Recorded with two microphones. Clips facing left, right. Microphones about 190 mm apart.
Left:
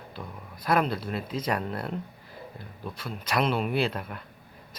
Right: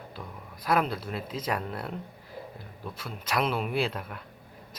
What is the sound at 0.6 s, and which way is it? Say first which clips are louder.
Speech: left 1 dB; 5° right (ahead or behind).